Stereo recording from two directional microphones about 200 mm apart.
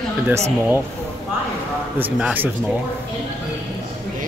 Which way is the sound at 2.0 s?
10° right (ahead or behind).